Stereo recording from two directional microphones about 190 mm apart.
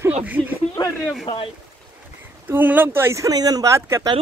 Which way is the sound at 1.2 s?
30° left (ahead or behind).